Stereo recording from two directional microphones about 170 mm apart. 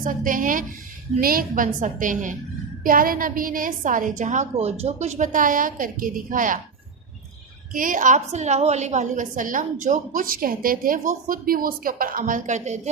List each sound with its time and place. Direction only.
0.0 s a woman's voice: 50° right (ahead or behind)
7.7 s a woman's voice: 55° right (ahead or behind)